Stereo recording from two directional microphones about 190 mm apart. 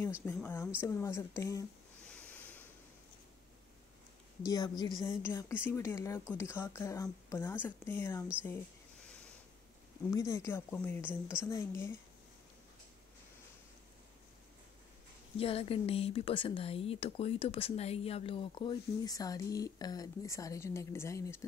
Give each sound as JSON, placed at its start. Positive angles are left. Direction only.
{"t": 0.2, "sound": "speech", "side_deg": 10}
{"t": 2.0, "sound": "a sound", "side_deg": 5}
{"t": 4.5, "sound": "speech", "side_deg": 20}
{"t": 9.0, "sound": "a sound", "side_deg": 5}
{"t": 10.1, "sound": "speech", "side_deg": 15}
{"t": 15.3, "sound": "speech", "side_deg": 30}